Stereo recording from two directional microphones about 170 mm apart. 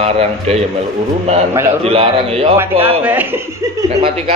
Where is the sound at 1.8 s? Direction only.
35° right (ahead or behind).